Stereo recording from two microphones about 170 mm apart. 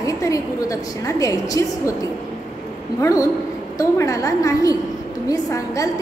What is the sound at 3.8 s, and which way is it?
A woman's voice, 20° left (ahead or behind).